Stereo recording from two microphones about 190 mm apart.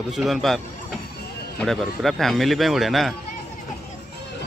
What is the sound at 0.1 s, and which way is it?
Speech, centre (ahead or behind).